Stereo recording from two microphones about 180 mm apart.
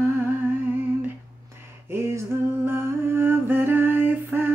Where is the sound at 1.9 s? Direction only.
15° right (ahead or behind).